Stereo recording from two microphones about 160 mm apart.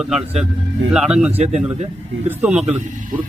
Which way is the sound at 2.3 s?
10° right (ahead or behind).